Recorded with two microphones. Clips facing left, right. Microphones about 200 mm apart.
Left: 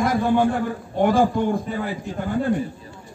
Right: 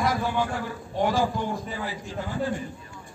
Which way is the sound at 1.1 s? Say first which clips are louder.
Left 7 dB; 55° left (ahead or behind).